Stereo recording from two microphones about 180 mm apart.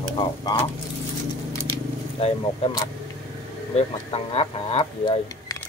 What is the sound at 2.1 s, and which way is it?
Speech, 35° left (ahead or behind).